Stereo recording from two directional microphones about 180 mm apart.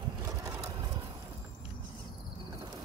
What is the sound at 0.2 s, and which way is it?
Vehicle, 15° right (ahead or behind).